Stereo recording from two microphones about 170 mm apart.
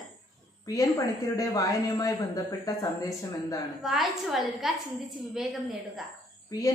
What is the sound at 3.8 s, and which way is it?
Speech, centre (ahead or behind).